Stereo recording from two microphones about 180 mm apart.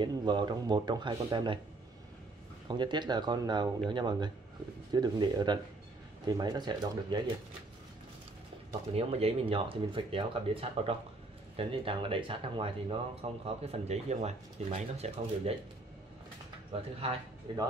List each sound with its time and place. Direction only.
0.0 s speech: 25° right (ahead or behind)
2.7 s speech: 25° right (ahead or behind)
8.9 s speech: 30° right (ahead or behind)
16.7 s speech: 35° right (ahead or behind)